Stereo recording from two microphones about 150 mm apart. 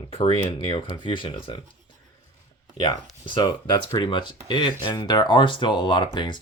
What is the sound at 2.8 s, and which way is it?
Speech, 30° left (ahead or behind).